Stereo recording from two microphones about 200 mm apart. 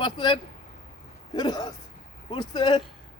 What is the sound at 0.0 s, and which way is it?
Speech, 20° left (ahead or behind).